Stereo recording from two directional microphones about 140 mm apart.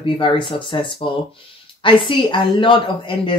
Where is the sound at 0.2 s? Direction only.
35° left (ahead or behind).